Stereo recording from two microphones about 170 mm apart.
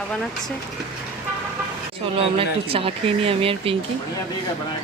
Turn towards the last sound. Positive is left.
turn(degrees=-35)  # may be behind; listen again after turning